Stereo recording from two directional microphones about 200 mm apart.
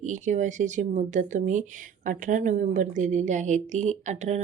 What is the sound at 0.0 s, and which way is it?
Speech, 35° right (ahead or behind).